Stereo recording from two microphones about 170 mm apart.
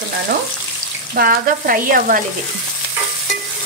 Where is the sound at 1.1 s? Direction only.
60° right (ahead or behind).